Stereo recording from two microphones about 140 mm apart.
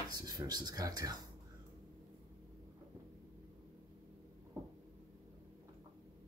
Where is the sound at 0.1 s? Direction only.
30° right (ahead or behind).